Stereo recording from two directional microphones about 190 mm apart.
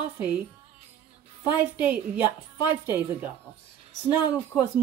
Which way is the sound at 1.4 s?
10° right (ahead or behind).